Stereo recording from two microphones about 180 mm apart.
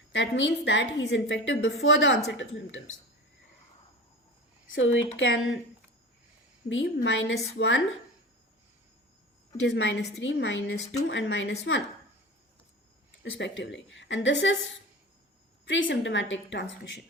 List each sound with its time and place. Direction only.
0.1 s a woman's voice: 90° left
4.8 s a woman's voice: 90° left
6.7 s a woman's voice: 80° left
9.6 s a woman's voice: 90° left
13.1 s a woman's voice: 90° left